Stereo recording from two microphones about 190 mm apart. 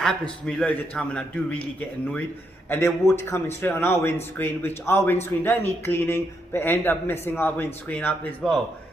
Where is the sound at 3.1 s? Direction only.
15° left (ahead or behind).